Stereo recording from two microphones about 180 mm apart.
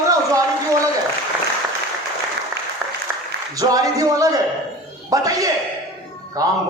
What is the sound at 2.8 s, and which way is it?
Applause, 5° right (ahead or behind).